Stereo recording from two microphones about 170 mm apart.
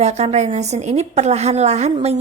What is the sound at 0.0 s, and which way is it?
A woman's voice, 40° right (ahead or behind).